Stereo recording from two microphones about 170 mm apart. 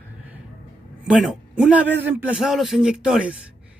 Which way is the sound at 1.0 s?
Centre (ahead or behind).